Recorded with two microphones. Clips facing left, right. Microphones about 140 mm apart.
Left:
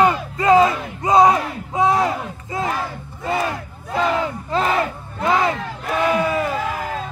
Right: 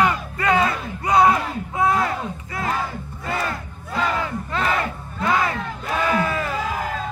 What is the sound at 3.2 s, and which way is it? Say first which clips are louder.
Crowd: left 5 dB; 20° left (ahead or behind).